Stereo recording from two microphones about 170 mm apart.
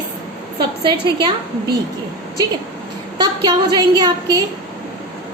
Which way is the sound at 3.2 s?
25° right (ahead or behind).